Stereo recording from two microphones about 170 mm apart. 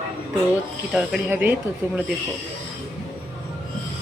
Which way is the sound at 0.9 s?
5° right (ahead or behind).